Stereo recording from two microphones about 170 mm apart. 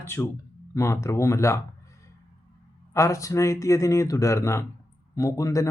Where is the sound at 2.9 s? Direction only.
20° left (ahead or behind).